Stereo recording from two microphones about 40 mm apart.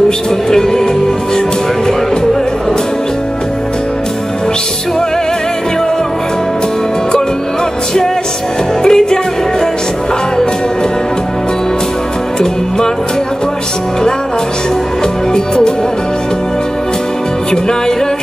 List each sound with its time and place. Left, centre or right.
0.5 s music: centre
8.8 s music: centre
15.3 s speech: centre